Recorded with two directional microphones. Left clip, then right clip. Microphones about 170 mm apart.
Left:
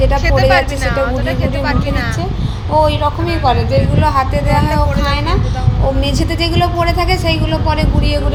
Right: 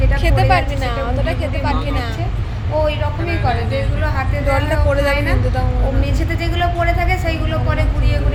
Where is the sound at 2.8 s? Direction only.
20° left (ahead or behind).